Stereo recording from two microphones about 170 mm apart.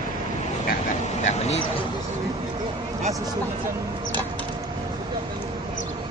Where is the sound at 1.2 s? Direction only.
45° left (ahead or behind).